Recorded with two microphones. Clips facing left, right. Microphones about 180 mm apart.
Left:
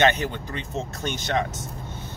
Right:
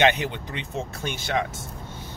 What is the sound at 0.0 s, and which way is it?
Speech, 15° right (ahead or behind).